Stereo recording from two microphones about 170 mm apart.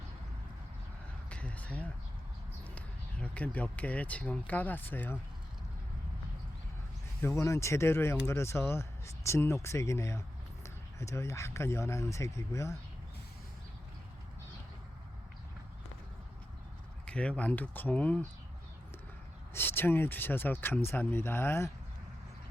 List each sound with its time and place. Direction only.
1.3 s speech: 5° left (ahead or behind)
7.2 s speech: 15° left (ahead or behind)
17.1 s speech: 5° left (ahead or behind)
19.5 s speech: 10° left (ahead or behind)